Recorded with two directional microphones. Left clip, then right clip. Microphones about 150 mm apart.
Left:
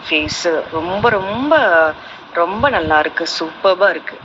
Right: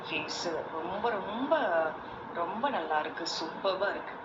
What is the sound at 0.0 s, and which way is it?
Speech, 90° left.